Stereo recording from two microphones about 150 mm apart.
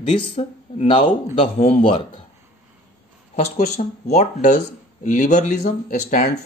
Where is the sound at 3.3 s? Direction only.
50° left (ahead or behind).